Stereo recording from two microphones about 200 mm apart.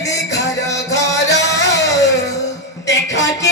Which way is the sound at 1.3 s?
60° left (ahead or behind).